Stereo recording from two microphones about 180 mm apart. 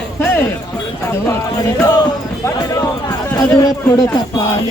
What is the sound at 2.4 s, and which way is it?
Speech, 20° left (ahead or behind).